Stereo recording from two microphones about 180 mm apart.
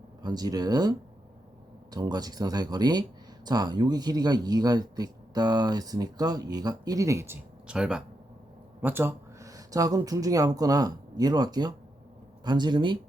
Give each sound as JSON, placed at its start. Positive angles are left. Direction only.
{"t": 0.2, "sound": "speech", "side_deg": -20}